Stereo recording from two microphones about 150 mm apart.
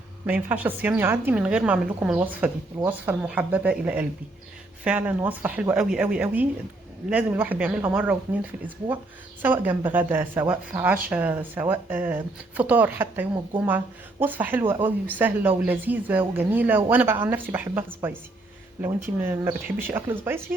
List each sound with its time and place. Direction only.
0.3 s speech: 10° right (ahead or behind)